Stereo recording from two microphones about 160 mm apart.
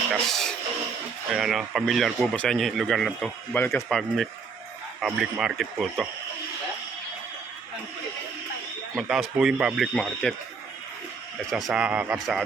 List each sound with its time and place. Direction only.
0.1 s speech: centre (ahead or behind)
3.5 s speech: 10° left (ahead or behind)
3.8 s speech: centre (ahead or behind)
9.0 s speech: 5° right (ahead or behind)
11.5 s speech: 5° right (ahead or behind)